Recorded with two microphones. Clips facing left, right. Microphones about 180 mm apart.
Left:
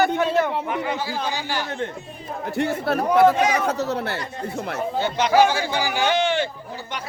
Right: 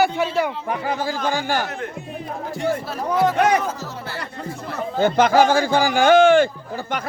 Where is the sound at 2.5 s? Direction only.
65° left (ahead or behind).